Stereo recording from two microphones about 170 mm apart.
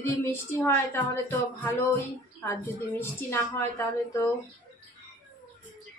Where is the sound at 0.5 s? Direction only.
15° left (ahead or behind).